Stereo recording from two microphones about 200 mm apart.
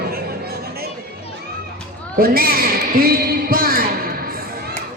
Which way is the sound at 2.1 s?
45° right (ahead or behind).